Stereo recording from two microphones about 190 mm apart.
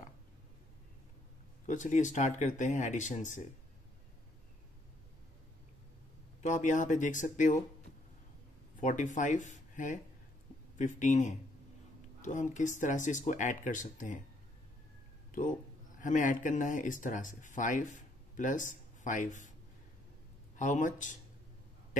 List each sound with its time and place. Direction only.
1.7 s speech: 40° left (ahead or behind)
6.4 s speech: 40° left (ahead or behind)
8.7 s speech: 40° left (ahead or behind)
16.0 s speech: 45° left (ahead or behind)
20.5 s speech: 40° left (ahead or behind)